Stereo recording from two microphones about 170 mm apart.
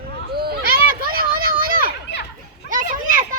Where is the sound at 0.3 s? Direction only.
60° right (ahead or behind).